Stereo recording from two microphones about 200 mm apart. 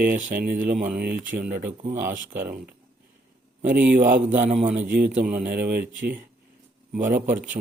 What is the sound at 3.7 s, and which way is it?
Speech, 10° right (ahead or behind).